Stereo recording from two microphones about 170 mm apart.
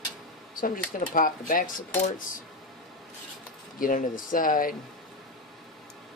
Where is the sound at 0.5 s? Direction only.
55° left (ahead or behind).